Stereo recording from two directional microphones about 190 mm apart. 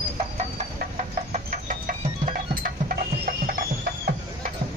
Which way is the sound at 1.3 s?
45° right (ahead or behind).